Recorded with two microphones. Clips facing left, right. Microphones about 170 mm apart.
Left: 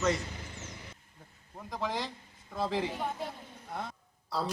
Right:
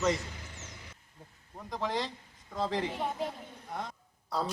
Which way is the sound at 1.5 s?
Centre (ahead or behind).